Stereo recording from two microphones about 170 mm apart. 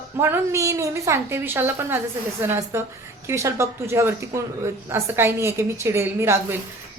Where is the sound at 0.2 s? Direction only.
15° right (ahead or behind).